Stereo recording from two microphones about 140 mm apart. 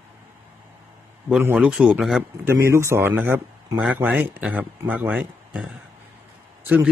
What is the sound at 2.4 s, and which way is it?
Speech, 20° right (ahead or behind).